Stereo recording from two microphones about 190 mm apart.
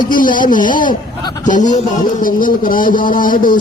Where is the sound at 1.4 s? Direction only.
40° left (ahead or behind).